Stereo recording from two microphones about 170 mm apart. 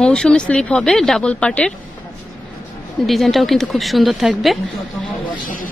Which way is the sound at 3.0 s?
Centre (ahead or behind).